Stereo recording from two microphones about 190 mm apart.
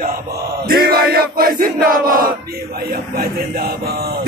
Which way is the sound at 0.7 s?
50° right (ahead or behind).